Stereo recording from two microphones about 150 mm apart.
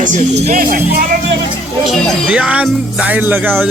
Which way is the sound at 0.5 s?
70° right (ahead or behind).